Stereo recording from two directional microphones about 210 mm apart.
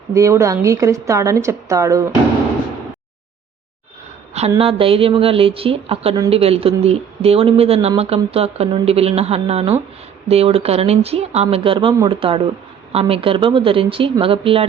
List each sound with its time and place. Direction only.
0.1 s a woman's voice: 15° right (ahead or behind)
4.4 s speech: 30° right (ahead or behind)